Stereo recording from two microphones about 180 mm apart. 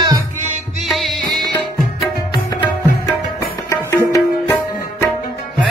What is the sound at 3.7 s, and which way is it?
Music, 15° left (ahead or behind).